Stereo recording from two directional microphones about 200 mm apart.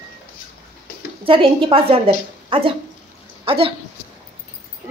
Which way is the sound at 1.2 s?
25° right (ahead or behind).